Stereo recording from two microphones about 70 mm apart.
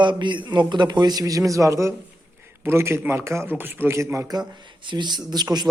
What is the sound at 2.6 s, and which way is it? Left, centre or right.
Speech, right.